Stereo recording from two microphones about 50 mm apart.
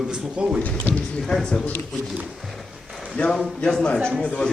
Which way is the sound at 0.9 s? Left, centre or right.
Left.